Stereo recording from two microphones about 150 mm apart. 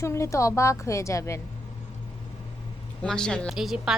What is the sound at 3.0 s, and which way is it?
Speech, 5° left (ahead or behind).